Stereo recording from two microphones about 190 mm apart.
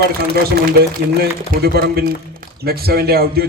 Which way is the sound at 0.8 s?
55° right (ahead or behind).